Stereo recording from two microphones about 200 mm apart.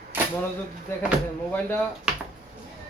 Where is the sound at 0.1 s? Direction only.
10° right (ahead or behind).